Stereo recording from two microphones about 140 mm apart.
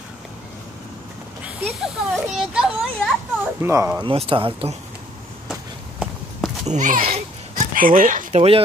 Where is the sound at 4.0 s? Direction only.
40° right (ahead or behind).